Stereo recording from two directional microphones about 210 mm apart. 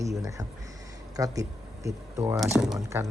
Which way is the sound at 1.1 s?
15° right (ahead or behind).